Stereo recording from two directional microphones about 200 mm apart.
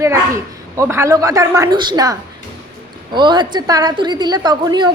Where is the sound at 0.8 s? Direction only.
15° right (ahead or behind).